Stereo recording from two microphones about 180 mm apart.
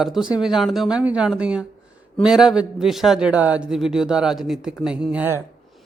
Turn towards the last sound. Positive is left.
turn(degrees=-10)  # may be behind; listen again after turning